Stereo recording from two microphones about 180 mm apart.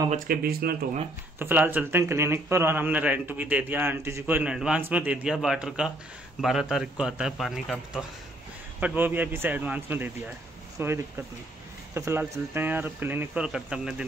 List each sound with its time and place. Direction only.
0.1 s speech: 55° right (ahead or behind)
1.4 s a man's voice: 10° right (ahead or behind)